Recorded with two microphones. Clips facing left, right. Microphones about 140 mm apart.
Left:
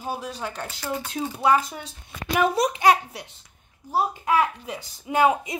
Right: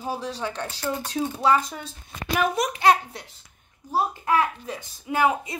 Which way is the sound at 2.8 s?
10° left (ahead or behind).